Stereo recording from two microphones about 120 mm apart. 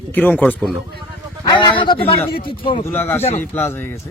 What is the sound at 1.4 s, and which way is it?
Speech, 40° left (ahead or behind).